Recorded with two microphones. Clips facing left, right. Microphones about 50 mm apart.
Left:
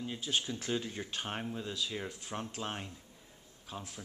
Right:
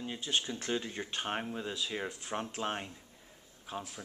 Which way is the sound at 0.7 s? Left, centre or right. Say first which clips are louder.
Right 1 dB; centre.